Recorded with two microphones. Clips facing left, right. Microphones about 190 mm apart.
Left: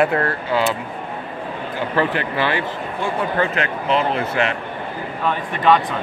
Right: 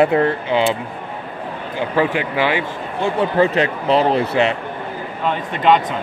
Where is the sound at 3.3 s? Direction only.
35° right (ahead or behind).